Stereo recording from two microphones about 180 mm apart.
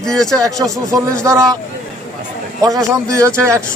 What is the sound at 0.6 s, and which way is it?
Speech, 15° right (ahead or behind).